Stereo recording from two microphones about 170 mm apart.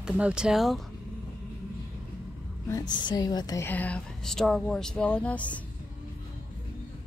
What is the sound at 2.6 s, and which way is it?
A woman's voice, 20° left (ahead or behind).